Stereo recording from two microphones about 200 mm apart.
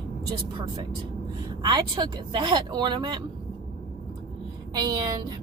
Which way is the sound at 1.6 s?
20° right (ahead or behind).